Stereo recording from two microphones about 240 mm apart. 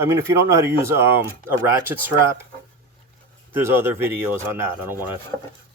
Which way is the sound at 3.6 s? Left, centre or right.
Centre.